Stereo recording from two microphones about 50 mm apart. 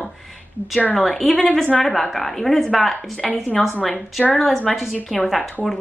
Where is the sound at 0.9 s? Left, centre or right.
Centre.